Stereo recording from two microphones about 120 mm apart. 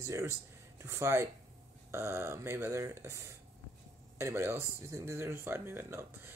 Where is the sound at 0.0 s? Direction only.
25° right (ahead or behind).